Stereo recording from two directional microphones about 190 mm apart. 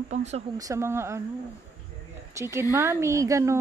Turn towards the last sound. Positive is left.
turn(degrees=-15)  # may be behind; listen again after turning